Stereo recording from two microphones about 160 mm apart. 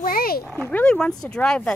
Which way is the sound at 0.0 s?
65° left (ahead or behind).